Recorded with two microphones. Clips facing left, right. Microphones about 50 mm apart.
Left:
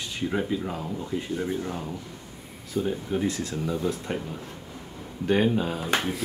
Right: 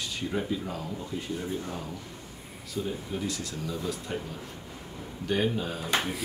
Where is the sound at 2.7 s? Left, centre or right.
Left.